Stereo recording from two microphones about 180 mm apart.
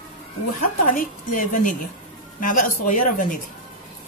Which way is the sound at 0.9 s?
45° left (ahead or behind).